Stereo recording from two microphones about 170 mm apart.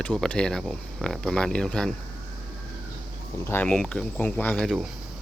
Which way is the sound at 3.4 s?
10° left (ahead or behind).